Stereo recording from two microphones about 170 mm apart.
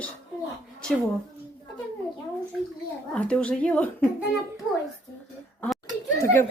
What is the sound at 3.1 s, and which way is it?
Speech, 5° left (ahead or behind).